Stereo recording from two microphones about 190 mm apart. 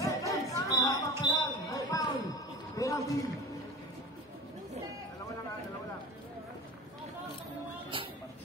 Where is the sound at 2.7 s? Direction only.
20° left (ahead or behind).